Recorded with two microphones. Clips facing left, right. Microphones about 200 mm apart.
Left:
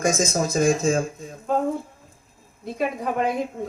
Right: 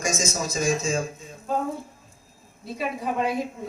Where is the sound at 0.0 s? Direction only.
55° left (ahead or behind).